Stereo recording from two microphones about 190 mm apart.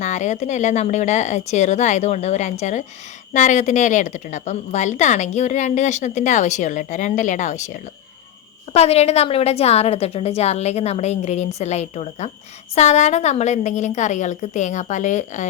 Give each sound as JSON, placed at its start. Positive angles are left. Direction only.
{"t": 0.0, "sound": "a woman's voice", "side_deg": 40}